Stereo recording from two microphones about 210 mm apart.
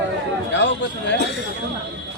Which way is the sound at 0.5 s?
55° left (ahead or behind).